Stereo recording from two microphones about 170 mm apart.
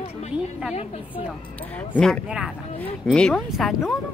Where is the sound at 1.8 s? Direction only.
5° left (ahead or behind).